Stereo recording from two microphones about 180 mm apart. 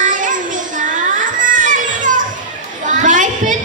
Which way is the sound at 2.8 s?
45° right (ahead or behind).